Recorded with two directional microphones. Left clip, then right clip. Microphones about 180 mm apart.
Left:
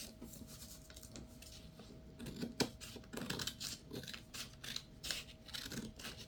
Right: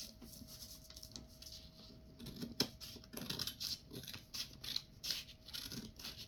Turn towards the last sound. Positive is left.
turn(degrees=-5)  # may be behind; listen again after turning